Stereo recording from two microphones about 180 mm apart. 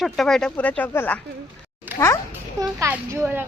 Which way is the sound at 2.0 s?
15° left (ahead or behind).